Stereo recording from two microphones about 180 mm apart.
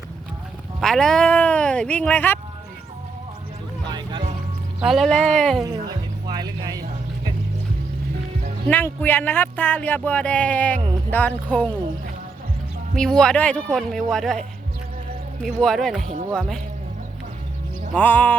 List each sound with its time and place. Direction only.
0.8 s speech: 5° left (ahead or behind)
3.8 s music: 25° right (ahead or behind)
4.8 s speech: centre (ahead or behind)
5.6 s music: 20° right (ahead or behind)
8.7 s speech: 10° left (ahead or behind)
13.0 s speech: 5° left (ahead or behind)
15.4 s speech: centre (ahead or behind)
17.9 s speech: 10° left (ahead or behind)